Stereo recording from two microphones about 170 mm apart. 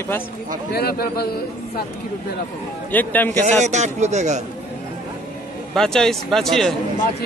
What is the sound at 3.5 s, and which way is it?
Speech, 45° right (ahead or behind).